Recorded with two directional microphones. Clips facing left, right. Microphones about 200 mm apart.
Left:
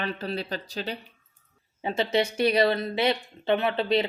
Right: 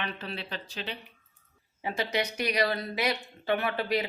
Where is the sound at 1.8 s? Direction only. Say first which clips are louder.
Left 5 dB; 25° left (ahead or behind).